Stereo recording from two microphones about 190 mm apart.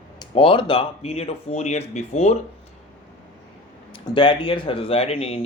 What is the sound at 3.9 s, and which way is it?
Speech, 25° left (ahead or behind).